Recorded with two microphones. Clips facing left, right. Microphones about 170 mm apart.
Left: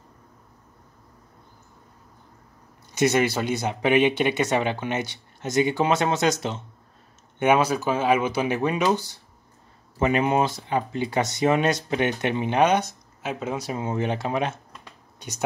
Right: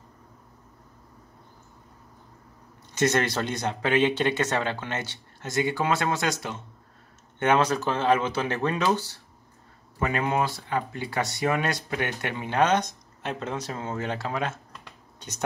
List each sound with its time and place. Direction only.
2.9 s speech: 10° left (ahead or behind)
7.3 s speech: 10° left (ahead or behind)